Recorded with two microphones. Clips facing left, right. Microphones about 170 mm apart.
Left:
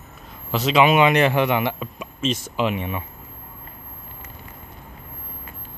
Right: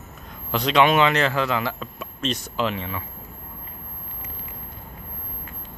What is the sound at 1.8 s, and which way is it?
A man's voice, 10° left (ahead or behind).